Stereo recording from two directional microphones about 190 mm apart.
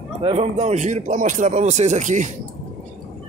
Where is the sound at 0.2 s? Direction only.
30° right (ahead or behind).